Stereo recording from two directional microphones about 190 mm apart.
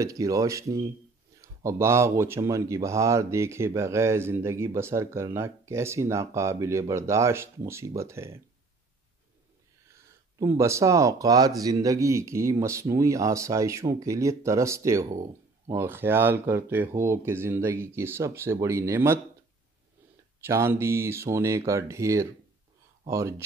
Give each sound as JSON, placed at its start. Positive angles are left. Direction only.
{"t": 0.0, "sound": "speech", "side_deg": -15}
{"t": 9.9, "sound": "speech", "side_deg": -15}
{"t": 20.4, "sound": "speech", "side_deg": -10}